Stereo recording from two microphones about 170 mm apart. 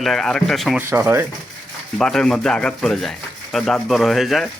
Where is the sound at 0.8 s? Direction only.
15° right (ahead or behind).